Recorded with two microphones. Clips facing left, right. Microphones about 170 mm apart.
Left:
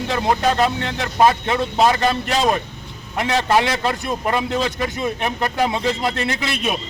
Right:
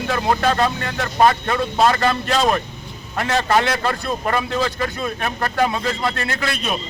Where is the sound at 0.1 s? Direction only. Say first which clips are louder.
Even; 15° left (ahead or behind).